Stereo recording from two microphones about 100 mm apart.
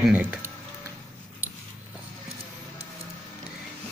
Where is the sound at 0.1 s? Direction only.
15° right (ahead or behind).